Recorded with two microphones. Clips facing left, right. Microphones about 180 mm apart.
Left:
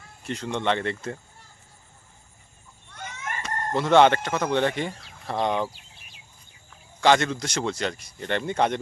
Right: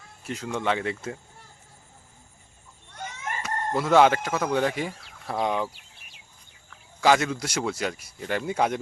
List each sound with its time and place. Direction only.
0.3 s speech: 5° right (ahead or behind)
3.4 s speech: 5° right (ahead or behind)
5.7 s a sound: 60° right (ahead or behind)
7.0 s speech: 5° right (ahead or behind)